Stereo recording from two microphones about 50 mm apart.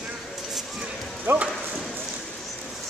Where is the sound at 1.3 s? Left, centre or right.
Right.